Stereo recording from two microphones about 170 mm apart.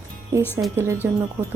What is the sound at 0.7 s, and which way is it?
Speech, 15° right (ahead or behind).